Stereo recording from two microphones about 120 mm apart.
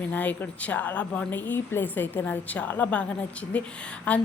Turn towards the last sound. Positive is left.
turn(degrees=10)  # may be behind; listen again after turning